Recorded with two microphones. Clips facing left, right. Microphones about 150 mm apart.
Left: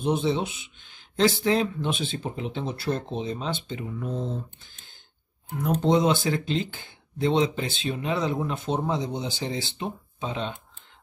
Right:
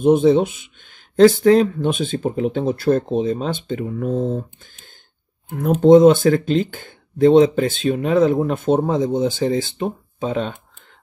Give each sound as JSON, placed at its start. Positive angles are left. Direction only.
{"t": 0.0, "sound": "speech", "side_deg": -50}
{"t": 5.6, "sound": "speech", "side_deg": -50}